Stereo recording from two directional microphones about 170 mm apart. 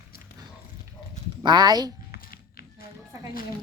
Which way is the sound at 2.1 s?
65° left (ahead or behind).